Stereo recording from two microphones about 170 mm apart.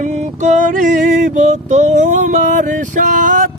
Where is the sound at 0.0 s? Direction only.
45° right (ahead or behind).